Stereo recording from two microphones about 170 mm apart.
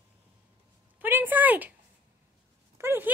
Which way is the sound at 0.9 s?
10° right (ahead or behind).